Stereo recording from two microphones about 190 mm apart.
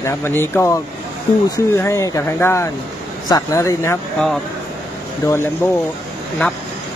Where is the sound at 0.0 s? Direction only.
15° left (ahead or behind).